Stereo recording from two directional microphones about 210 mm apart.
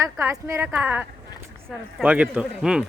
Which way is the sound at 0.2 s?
10° right (ahead or behind).